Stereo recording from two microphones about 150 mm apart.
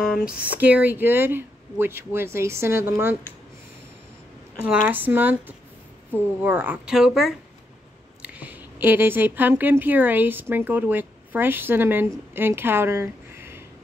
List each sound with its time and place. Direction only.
0.6 s speech: 10° right (ahead or behind)
4.6 s a woman's voice: 10° right (ahead or behind)